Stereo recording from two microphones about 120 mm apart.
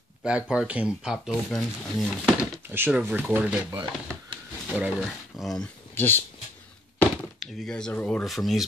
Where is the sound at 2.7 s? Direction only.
15° right (ahead or behind).